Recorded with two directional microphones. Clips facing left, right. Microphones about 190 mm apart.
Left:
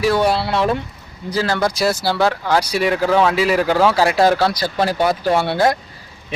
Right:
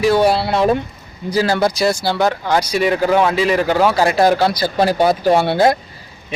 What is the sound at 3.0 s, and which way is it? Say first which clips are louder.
Speech: even; 10° right (ahead or behind).